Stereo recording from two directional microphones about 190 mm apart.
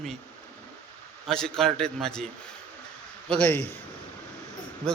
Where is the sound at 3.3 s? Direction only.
10° left (ahead or behind).